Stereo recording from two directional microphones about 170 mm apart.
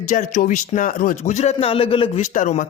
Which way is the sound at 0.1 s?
45° left (ahead or behind).